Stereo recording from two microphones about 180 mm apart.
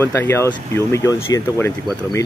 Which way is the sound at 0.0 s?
10° left (ahead or behind).